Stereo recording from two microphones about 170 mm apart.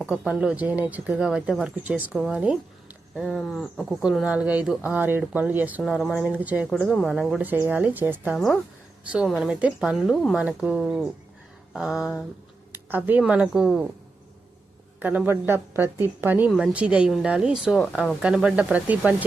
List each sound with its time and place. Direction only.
0.0 s speech: 5° right (ahead or behind)
6.3 s speech: 10° right (ahead or behind)
14.9 s speech: 10° right (ahead or behind)